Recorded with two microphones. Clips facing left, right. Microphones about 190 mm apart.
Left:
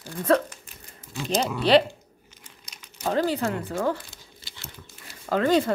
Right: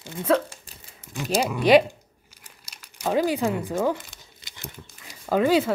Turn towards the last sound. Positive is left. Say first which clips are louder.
# right 1 dB
turn(degrees=-10)  # may be behind; listen again after turning